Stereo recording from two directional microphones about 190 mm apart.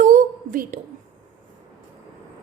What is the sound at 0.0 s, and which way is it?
Whispering, 45° right (ahead or behind).